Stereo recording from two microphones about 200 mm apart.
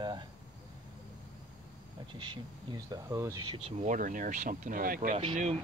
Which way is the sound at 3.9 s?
40° right (ahead or behind).